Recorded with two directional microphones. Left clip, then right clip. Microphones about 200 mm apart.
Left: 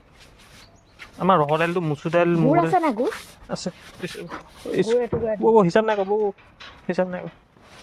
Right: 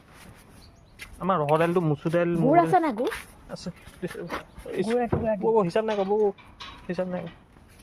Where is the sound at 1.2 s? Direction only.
55° left (ahead or behind).